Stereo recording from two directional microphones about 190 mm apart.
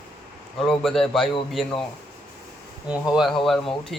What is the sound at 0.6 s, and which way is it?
Speech, centre (ahead or behind).